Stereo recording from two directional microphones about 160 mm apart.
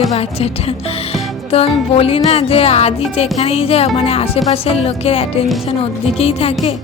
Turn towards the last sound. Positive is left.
turn(degrees=35)  # may be behind; listen again after turning